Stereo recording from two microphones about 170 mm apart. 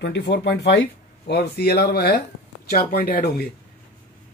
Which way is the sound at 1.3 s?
75° left (ahead or behind).